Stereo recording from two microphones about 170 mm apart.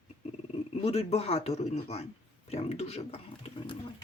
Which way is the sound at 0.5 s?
35° left (ahead or behind).